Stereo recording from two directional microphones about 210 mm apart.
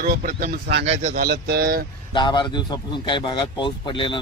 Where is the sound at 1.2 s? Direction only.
45° right (ahead or behind).